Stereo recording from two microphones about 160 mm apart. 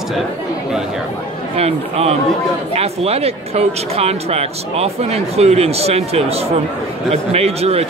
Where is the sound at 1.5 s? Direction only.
40° right (ahead or behind).